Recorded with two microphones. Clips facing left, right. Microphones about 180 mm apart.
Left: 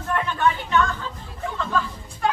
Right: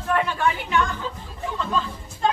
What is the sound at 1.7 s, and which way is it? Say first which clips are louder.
Speech: left 2 dB; 20° right (ahead or behind).